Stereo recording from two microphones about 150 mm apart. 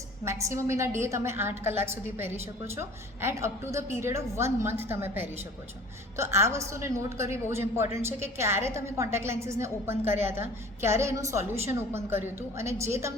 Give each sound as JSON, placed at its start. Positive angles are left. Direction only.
{"t": 0.3, "sound": "a woman's voice", "side_deg": -20}